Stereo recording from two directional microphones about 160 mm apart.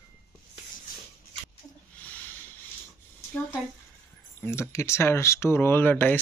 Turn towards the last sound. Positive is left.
turn(degrees=10)  # may be behind; listen again after turning